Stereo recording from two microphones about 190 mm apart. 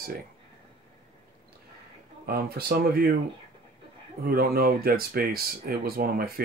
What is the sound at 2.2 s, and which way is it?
Speech, 55° right (ahead or behind).